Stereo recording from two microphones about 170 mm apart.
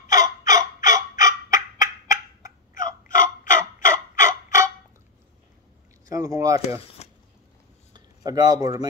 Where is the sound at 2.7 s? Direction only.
50° left (ahead or behind).